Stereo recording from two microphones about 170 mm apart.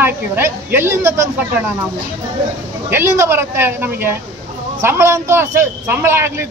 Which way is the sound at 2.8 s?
15° right (ahead or behind).